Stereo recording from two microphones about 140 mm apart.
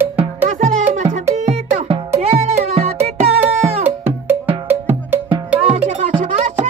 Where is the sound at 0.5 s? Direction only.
55° right (ahead or behind).